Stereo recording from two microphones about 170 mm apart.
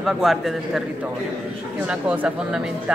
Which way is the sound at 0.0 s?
Centre (ahead or behind).